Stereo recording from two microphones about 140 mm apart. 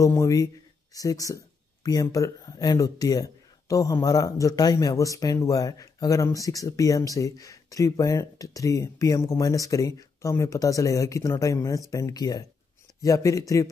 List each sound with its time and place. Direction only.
0.0 s speech: 20° left (ahead or behind)